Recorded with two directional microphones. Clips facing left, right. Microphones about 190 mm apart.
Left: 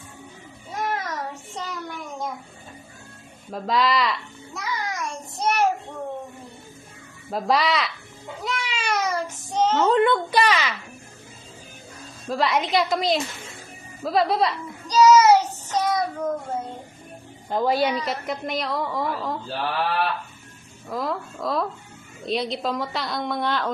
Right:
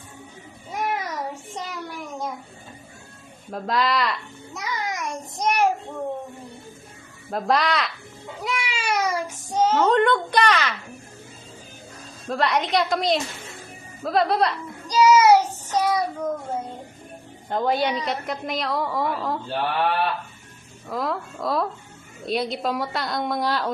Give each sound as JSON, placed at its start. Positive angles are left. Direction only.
{"t": 0.7, "sound": "child singing", "side_deg": -15}
{"t": 3.5, "sound": "a woman's voice", "side_deg": 0}
{"t": 4.5, "sound": "child singing", "side_deg": -20}
{"t": 7.3, "sound": "a woman's voice", "side_deg": 0}
{"t": 8.4, "sound": "a sound", "side_deg": -10}
{"t": 9.8, "sound": "a woman's voice", "side_deg": 5}
{"t": 12.2, "sound": "a woman's voice", "side_deg": 0}
{"t": 14.8, "sound": "child singing", "side_deg": -10}
{"t": 17.5, "sound": "a woman's voice", "side_deg": 0}
{"t": 20.9, "sound": "a woman's voice", "side_deg": 0}